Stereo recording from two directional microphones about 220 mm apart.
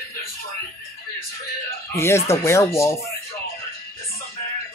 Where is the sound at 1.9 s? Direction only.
10° left (ahead or behind).